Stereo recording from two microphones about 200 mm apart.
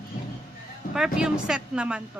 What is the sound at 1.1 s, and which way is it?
Speech, 5° right (ahead or behind).